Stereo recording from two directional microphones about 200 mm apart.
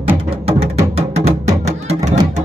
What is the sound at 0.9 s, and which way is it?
Music, 30° right (ahead or behind).